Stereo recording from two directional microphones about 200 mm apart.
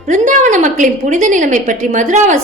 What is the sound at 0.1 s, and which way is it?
A woman's voice, 40° right (ahead or behind).